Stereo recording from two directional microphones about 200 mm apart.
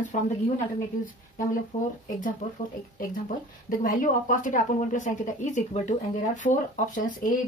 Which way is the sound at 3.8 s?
40° left (ahead or behind).